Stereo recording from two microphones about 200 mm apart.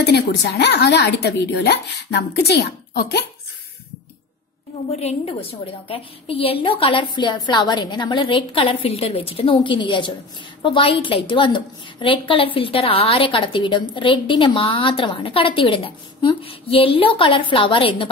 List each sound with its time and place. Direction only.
0.0 s a woman's voice: 55° left (ahead or behind)
4.8 s a woman's voice: 30° left (ahead or behind)